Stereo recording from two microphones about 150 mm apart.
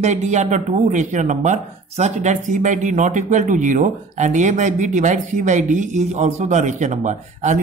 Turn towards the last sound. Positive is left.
turn(degrees=-55)  # may be behind; listen again after turning